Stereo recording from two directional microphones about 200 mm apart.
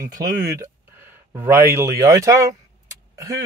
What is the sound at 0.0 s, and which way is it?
Speech, 20° right (ahead or behind).